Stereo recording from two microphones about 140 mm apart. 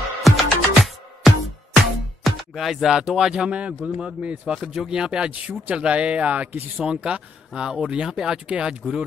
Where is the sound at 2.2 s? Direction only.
Centre (ahead or behind).